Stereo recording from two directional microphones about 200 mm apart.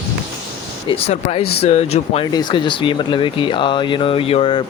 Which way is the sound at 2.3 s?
20° left (ahead or behind).